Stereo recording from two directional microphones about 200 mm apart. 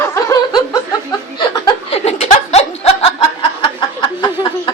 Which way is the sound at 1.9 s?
30° left (ahead or behind).